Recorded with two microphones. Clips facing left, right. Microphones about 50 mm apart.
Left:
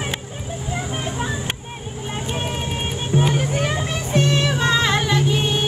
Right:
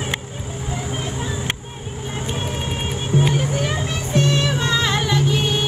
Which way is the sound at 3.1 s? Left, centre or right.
Centre.